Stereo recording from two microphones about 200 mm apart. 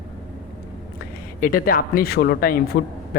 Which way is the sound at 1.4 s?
45° left (ahead or behind).